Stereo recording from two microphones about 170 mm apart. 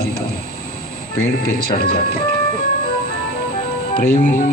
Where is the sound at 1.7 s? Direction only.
65° left (ahead or behind).